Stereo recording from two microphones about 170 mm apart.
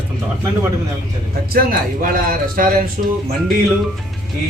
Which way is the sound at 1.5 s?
55° right (ahead or behind).